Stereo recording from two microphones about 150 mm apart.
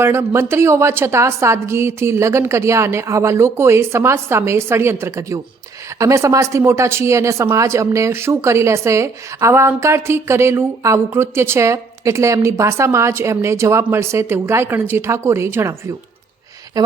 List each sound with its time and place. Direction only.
0.0 s speech: 15° right (ahead or behind)
16.8 s speech: 25° right (ahead or behind)